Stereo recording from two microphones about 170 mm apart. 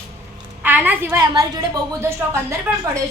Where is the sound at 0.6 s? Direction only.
10° right (ahead or behind).